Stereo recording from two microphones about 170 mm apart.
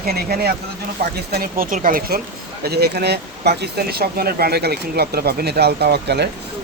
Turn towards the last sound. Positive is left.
turn(degrees=-75)  # may be behind; listen again after turning